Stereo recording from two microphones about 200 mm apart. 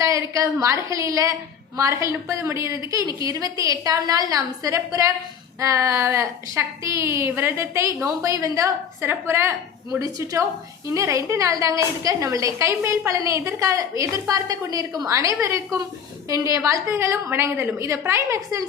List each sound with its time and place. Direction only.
0.0 s a woman's voice: 15° right (ahead or behind)